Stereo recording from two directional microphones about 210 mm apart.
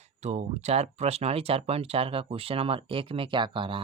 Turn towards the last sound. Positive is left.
turn(degrees=-25)  # may be behind; listen again after turning